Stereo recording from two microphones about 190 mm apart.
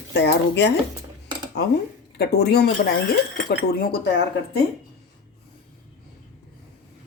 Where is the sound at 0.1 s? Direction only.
65° left (ahead or behind).